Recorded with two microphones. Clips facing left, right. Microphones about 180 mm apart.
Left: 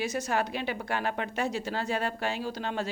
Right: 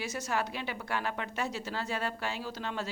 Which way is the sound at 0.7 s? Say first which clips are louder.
Left 4 dB; 55° left (ahead or behind).